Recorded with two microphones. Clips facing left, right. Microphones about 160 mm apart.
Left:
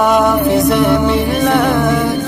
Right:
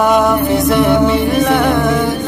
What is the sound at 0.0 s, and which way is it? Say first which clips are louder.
Music: even; centre (ahead or behind).